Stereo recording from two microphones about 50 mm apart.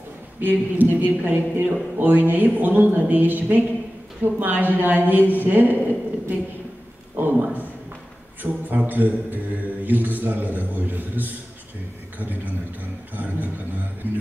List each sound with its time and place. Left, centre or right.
0.4 s speech: right
7.2 s a sound: right
8.4 s mantra: right
12.2 s speech: right